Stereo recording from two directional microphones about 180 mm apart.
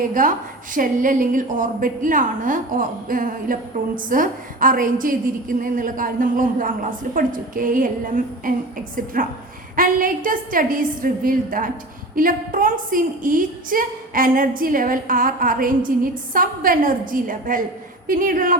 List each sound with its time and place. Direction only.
0.0 s a woman's voice: 45° right (ahead or behind)
9.7 s a woman's voice: 50° right (ahead or behind)